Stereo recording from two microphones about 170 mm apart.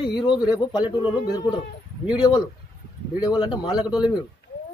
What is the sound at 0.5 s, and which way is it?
A man's voice, 25° left (ahead or behind).